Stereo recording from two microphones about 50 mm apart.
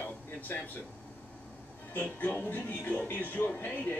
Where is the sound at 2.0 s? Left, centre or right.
Left.